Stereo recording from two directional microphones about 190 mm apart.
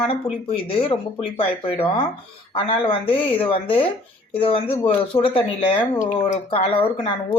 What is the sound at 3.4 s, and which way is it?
Speech, 30° left (ahead or behind).